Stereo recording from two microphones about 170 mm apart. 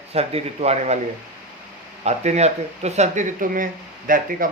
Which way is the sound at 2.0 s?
40° right (ahead or behind).